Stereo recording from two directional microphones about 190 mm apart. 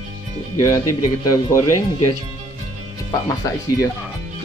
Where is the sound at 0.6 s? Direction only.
15° left (ahead or behind).